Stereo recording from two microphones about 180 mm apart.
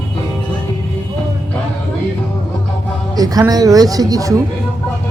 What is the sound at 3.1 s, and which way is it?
A woman's voice, 20° right (ahead or behind).